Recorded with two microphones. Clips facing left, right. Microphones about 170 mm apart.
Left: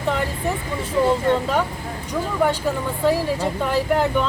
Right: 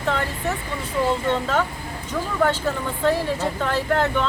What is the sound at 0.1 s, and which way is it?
Vehicle, 10° left (ahead or behind).